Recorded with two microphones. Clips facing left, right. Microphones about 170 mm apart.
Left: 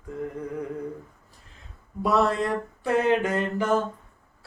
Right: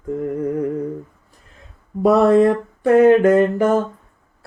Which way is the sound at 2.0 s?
55° right (ahead or behind).